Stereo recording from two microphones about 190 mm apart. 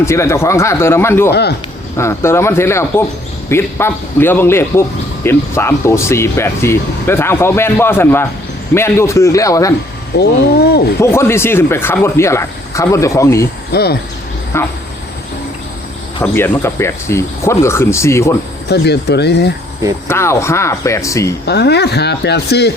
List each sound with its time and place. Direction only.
0.0 s speech: 15° left (ahead or behind)
1.3 s speech: 60° left (ahead or behind)
2.0 s speech: 15° left (ahead or behind)
10.2 s speech: 55° left (ahead or behind)
11.0 s speech: 15° left (ahead or behind)
13.7 s speech: 55° left (ahead or behind)
14.5 s speech: 15° left (ahead or behind)
16.2 s speech: 10° left (ahead or behind)
18.7 s speech: 60° left (ahead or behind)
20.1 s speech: 15° left (ahead or behind)
21.4 s speech: 60° left (ahead or behind)